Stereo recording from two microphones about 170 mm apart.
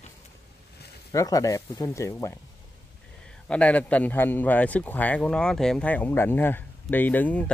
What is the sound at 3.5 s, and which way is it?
Speech, 5° left (ahead or behind).